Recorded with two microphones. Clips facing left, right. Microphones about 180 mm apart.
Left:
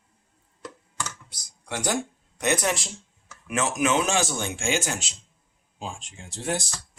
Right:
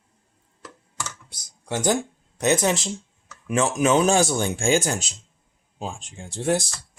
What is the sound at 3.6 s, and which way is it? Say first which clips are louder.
Speech: right 4 dB; 30° right (ahead or behind).